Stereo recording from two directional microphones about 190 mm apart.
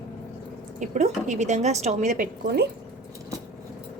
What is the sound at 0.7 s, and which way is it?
A woman's voice, 40° right (ahead or behind).